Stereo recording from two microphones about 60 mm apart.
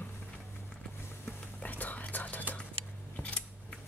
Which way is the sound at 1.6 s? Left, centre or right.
Left.